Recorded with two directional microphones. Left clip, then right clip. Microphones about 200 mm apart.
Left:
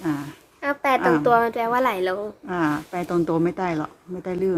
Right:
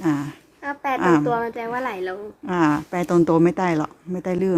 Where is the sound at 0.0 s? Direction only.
40° right (ahead or behind).